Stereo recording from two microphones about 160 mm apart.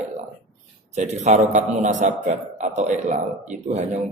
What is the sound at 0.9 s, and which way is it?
A man's voice, 45° right (ahead or behind).